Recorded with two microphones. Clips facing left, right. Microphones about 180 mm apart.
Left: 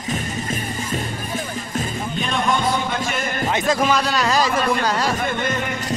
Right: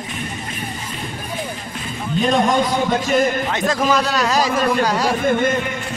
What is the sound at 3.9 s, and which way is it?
Speech, centre (ahead or behind).